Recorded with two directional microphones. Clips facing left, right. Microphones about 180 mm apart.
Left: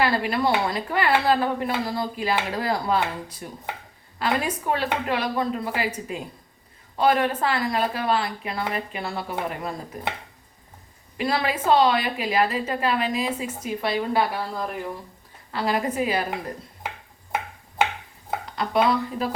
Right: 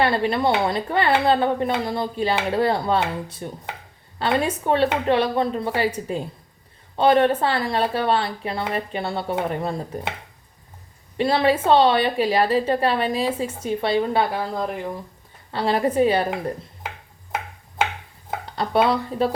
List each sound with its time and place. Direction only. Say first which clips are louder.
0.0 s a woman's voice: right 3 dB; 25° right (ahead or behind)
11.2 s a woman's voice: right 6 dB; 30° right (ahead or behind)
18.5 s speech: right 2 dB; 30° right (ahead or behind)